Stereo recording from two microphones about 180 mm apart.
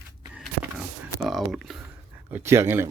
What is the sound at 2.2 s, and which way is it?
Speech, 10° right (ahead or behind).